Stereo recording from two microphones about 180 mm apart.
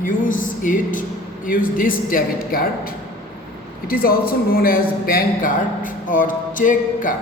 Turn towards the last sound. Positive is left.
turn(degrees=45)  # may be behind; listen again after turning